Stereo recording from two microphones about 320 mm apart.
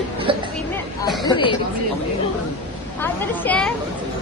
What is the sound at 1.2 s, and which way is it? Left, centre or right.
Chatter, centre.